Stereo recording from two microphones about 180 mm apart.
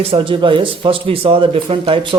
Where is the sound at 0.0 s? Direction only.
30° right (ahead or behind).